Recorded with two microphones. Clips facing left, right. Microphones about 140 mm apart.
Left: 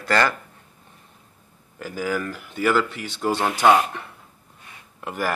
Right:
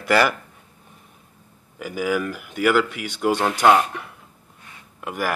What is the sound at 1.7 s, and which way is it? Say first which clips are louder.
Speech: right 3 dB; 5° right (ahead or behind).